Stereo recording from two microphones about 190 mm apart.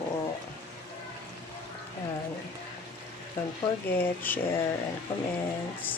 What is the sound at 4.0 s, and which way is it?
Speech, 10° left (ahead or behind).